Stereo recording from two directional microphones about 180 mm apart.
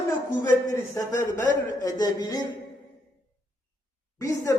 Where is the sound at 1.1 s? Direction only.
20° left (ahead or behind).